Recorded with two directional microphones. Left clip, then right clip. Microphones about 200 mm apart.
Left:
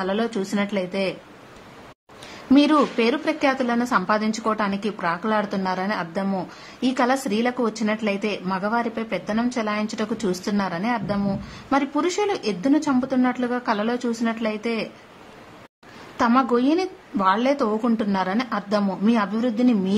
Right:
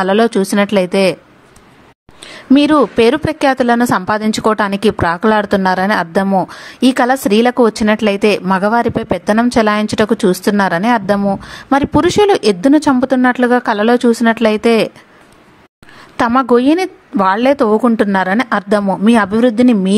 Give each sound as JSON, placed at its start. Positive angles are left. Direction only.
{"t": 0.0, "sound": "a woman's voice", "side_deg": -40}
{"t": 2.5, "sound": "a woman's voice", "side_deg": -40}
{"t": 16.2, "sound": "a woman's voice", "side_deg": -40}